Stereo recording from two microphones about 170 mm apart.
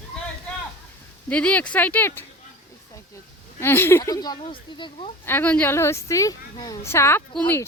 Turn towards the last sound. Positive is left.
turn(degrees=10)  # may be behind; listen again after turning